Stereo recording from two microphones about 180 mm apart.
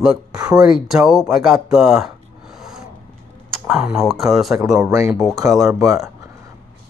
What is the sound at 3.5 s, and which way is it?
Speech, centre (ahead or behind).